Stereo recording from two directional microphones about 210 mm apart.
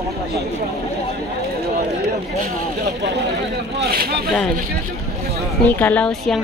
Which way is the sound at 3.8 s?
45° right (ahead or behind).